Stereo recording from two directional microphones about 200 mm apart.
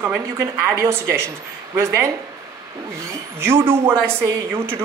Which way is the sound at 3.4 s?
10° right (ahead or behind).